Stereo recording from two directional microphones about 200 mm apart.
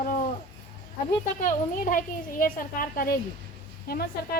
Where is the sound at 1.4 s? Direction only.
40° left (ahead or behind).